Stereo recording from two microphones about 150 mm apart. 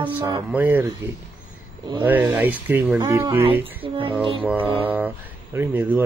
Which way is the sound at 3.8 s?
35° right (ahead or behind).